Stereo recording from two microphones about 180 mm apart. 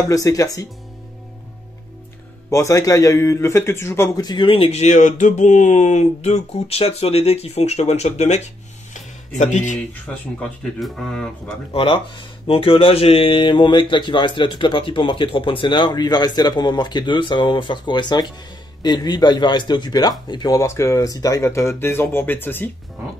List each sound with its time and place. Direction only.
0.0 s speech: 20° left (ahead or behind)
2.5 s a man's voice: 15° left (ahead or behind); by 8.4 s 35° left (ahead or behind)
8.9 s a sound: 45° left (ahead or behind)
10.1 s speech: 5° left (ahead or behind)
11.7 s speech: 30° left (ahead or behind); by 22.7 s 10° left (ahead or behind)